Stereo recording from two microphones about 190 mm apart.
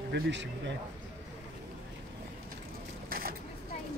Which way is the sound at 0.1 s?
70° right (ahead or behind).